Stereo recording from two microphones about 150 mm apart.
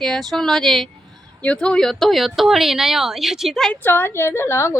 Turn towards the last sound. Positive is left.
turn(degrees=20)  # may be behind; listen again after turning